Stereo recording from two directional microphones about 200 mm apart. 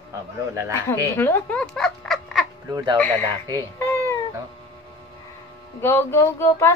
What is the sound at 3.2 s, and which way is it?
Speech, 20° right (ahead or behind).